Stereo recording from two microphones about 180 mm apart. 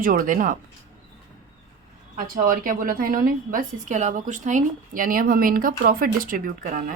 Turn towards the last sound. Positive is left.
turn(degrees=-45)  # may be behind; listen again after turning